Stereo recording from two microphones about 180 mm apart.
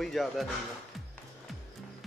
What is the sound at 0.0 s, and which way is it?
Speech, centre (ahead or behind).